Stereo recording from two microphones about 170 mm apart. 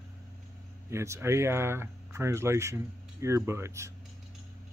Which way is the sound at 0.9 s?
15° right (ahead or behind).